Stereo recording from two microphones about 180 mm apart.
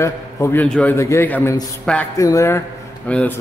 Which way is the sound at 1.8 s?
5° left (ahead or behind).